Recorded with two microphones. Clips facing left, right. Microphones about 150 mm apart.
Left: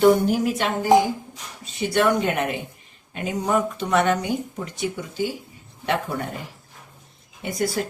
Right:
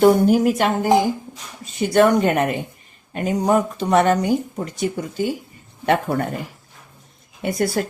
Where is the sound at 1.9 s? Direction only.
45° right (ahead or behind).